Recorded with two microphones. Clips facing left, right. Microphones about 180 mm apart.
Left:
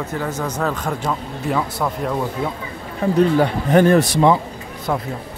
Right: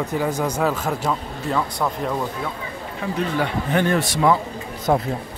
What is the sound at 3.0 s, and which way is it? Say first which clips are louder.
Speech: left 8 dB; 40° left (ahead or behind).